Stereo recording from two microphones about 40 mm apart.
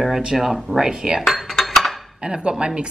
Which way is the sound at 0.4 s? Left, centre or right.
Centre.